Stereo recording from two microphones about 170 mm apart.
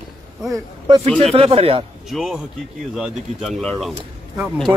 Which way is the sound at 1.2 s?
35° right (ahead or behind).